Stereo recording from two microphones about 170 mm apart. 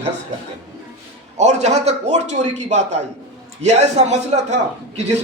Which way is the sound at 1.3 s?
45° right (ahead or behind).